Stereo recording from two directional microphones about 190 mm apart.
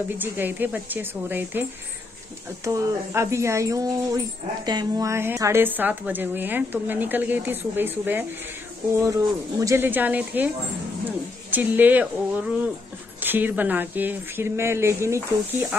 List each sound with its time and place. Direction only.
0.1 s speech: 10° right (ahead or behind)
11.5 s speech: 10° right (ahead or behind)